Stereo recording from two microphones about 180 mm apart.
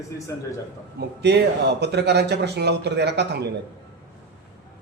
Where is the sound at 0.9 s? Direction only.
70° right (ahead or behind).